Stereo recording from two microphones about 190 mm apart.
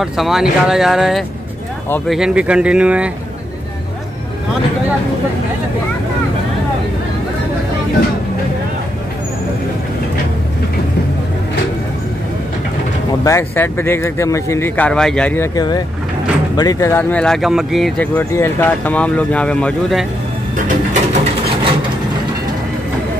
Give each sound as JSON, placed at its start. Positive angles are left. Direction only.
{"t": 0.0, "sound": "speech", "side_deg": 0}
{"t": 13.2, "sound": "speech", "side_deg": 15}
{"t": 20.5, "sound": "a sound", "side_deg": -40}